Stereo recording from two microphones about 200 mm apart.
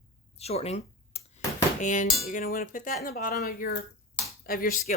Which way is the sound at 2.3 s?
45° left (ahead or behind).